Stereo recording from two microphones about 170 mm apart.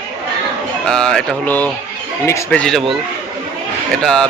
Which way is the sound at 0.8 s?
5° left (ahead or behind).